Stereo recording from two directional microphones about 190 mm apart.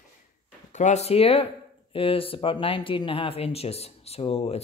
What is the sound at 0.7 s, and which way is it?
A man's voice, 40° left (ahead or behind).